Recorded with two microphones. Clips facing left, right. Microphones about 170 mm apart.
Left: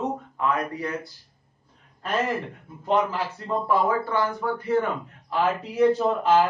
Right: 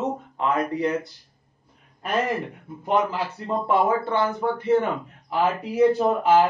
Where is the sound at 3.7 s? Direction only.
25° right (ahead or behind).